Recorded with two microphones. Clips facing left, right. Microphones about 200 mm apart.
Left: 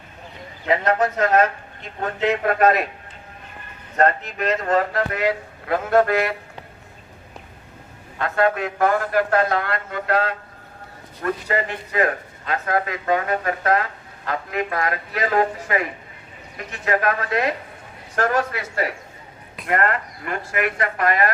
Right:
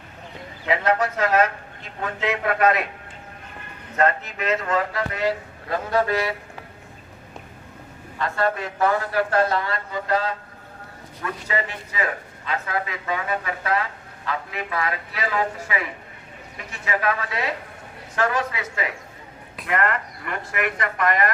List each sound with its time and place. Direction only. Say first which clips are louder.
1.0 s speech: left 2 dB; 40° left (ahead or behind)
3.9 s a man's voice: left 2 dB; 40° left (ahead or behind)
8.2 s speech: left 4 dB; 55° left (ahead or behind)
11.2 s a man's voice: left 4 dB; 45° left (ahead or behind)